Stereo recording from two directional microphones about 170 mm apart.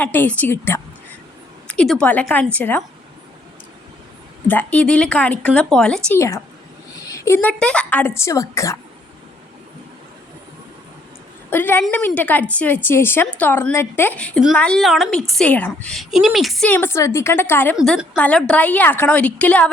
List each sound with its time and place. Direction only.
0.0 s a woman's voice: 10° left (ahead or behind)
4.4 s a woman's voice: 10° left (ahead or behind)
6.1 s a woman's voice: 20° left (ahead or behind)
11.5 s a woman's voice: 10° left (ahead or behind)
16.7 s a woman's voice: 15° left (ahead or behind)
17.7 s a woman's voice: 5° right (ahead or behind)